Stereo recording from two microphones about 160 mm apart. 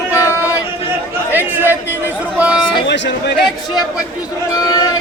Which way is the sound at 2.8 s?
90° left.